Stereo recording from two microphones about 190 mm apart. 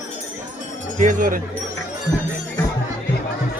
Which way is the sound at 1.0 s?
40° right (ahead or behind).